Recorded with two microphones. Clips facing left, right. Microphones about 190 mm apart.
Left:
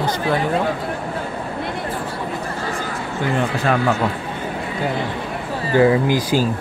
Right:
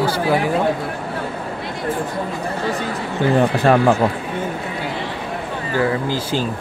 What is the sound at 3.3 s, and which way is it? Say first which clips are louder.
Speech: right 5 dB; 35° right (ahead or behind).